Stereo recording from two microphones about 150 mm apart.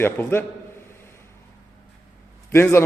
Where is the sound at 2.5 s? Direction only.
15° left (ahead or behind).